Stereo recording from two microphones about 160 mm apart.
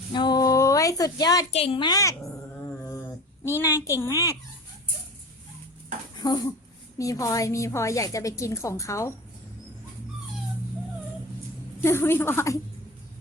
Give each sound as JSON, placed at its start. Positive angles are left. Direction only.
{"t": 0.1, "sound": "a sound", "side_deg": 25}
{"t": 1.5, "sound": "a woman's voice", "side_deg": 35}
{"t": 3.4, "sound": "a woman's voice", "side_deg": 15}
{"t": 6.2, "sound": "a woman's voice", "side_deg": 25}
{"t": 11.8, "sound": "a woman's voice", "side_deg": 15}